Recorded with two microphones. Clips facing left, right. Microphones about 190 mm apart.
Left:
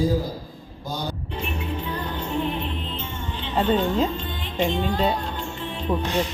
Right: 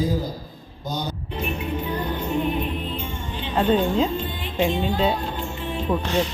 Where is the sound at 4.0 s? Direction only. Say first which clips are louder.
Right 1 dB; 5° right (ahead or behind).